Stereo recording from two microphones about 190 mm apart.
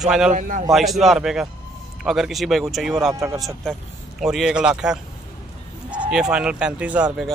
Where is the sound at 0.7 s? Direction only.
Centre (ahead or behind).